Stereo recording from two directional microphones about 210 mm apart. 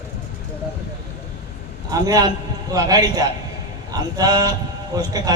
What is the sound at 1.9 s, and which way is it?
A man's voice, 15° right (ahead or behind).